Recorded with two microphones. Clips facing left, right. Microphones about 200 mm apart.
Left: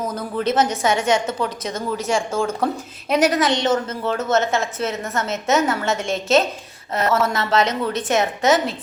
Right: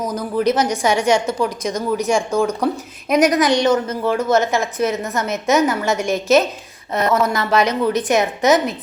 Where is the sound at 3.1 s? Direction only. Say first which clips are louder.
Right 3 dB; 25° left (ahead or behind).